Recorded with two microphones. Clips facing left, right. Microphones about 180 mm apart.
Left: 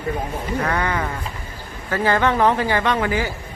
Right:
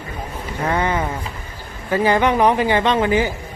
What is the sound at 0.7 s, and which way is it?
A man's voice, 20° right (ahead or behind).